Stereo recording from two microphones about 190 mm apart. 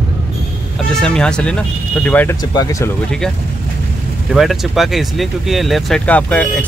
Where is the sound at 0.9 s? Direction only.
5° left (ahead or behind).